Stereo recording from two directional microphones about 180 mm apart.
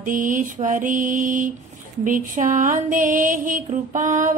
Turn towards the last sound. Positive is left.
turn(degrees=-45)  # may be behind; listen again after turning